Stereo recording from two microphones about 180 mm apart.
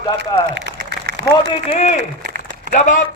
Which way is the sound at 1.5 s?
35° left (ahead or behind).